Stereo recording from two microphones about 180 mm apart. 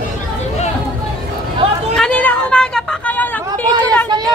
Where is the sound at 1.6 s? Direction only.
30° right (ahead or behind).